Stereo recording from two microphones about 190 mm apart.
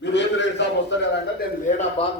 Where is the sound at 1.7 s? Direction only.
35° left (ahead or behind).